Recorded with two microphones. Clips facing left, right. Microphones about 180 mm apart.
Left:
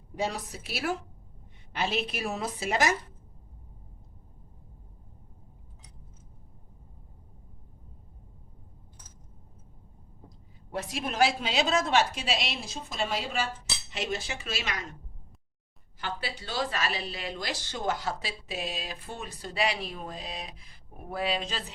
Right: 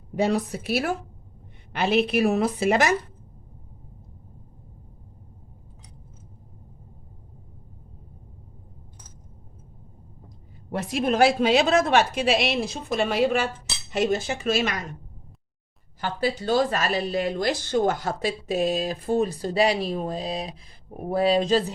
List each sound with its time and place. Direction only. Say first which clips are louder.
0.2 s a woman's voice: right 9 dB; 60° right (ahead or behind)
10.7 s a woman's voice: right 9 dB; 60° right (ahead or behind)
13.9 s speech: right 10 dB; 50° right (ahead or behind)
16.0 s speech: right 10 dB; 45° right (ahead or behind)